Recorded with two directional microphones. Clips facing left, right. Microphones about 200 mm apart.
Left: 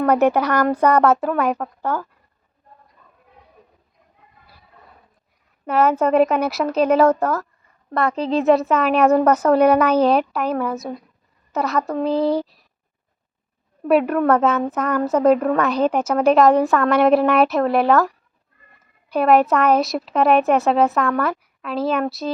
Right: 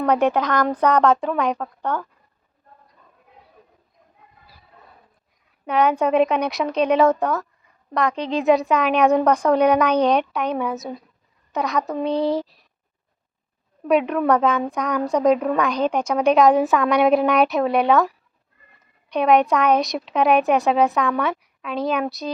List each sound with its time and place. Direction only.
0.0 s a woman's voice: 5° left (ahead or behind)
5.6 s a woman's voice: 5° left (ahead or behind)
13.8 s a woman's voice: 5° left (ahead or behind)